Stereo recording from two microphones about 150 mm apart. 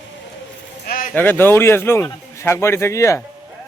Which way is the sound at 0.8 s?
75° left (ahead or behind).